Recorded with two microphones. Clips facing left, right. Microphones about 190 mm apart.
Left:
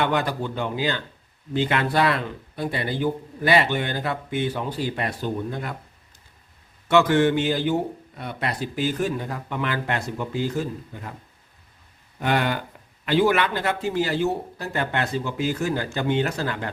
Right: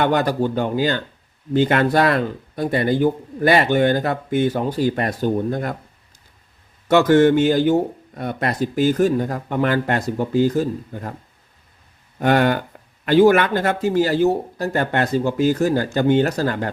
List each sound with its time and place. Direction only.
0.0 s speech: 40° right (ahead or behind)
6.8 s speech: 40° right (ahead or behind)
12.2 s speech: 50° right (ahead or behind)